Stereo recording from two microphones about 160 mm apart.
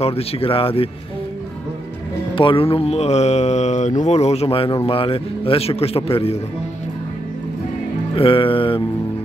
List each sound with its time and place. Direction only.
0.0 s speech: 40° left (ahead or behind)
2.3 s speech: 35° left (ahead or behind)
8.2 s speech: 35° left (ahead or behind)